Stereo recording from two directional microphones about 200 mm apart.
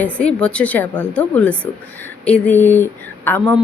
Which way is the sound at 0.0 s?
5° left (ahead or behind).